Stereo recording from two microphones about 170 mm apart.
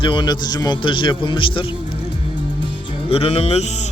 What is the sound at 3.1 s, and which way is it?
Speech, 35° left (ahead or behind).